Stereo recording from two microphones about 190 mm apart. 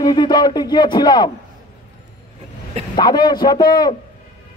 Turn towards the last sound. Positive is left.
turn(degrees=20)  # may be behind; listen again after turning